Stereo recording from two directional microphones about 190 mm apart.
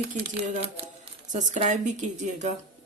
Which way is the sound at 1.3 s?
40° right (ahead or behind).